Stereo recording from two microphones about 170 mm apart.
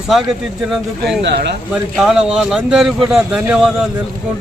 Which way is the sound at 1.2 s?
85° right.